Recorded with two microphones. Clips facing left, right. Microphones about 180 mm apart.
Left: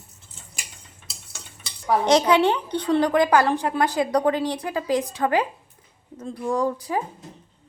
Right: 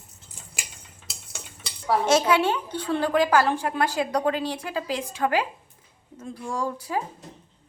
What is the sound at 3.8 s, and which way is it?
Speech, 10° right (ahead or behind).